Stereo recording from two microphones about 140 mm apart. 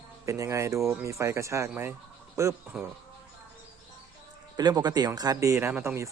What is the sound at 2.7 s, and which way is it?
Speech, centre (ahead or behind).